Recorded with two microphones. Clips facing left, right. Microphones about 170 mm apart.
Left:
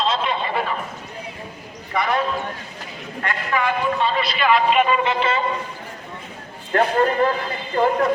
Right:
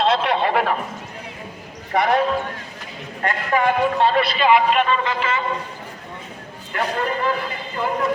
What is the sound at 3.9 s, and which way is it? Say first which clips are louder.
Speech: right 4 dB; 70° right (ahead or behind).